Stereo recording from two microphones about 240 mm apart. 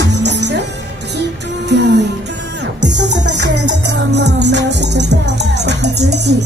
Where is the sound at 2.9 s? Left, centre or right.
Right.